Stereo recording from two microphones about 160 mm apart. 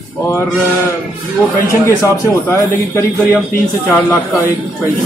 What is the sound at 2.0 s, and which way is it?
Speech, 15° left (ahead or behind).